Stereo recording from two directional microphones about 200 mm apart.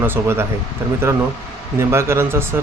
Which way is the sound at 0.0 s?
10° right (ahead or behind).